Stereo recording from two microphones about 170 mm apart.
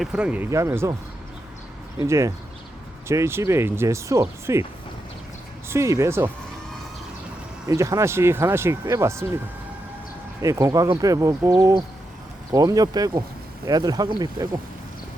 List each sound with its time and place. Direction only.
0.0 s speech: 5° right (ahead or behind)
2.0 s speech: 20° right (ahead or behind)
5.6 s speech: 15° right (ahead or behind)
7.7 s speech: 20° right (ahead or behind)
10.4 s speech: 20° right (ahead or behind)